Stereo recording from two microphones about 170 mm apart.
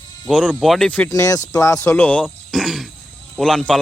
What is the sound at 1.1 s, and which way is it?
Speech, 20° left (ahead or behind).